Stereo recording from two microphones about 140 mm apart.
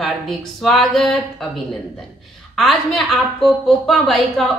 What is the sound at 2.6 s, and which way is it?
A woman's voice, centre (ahead or behind).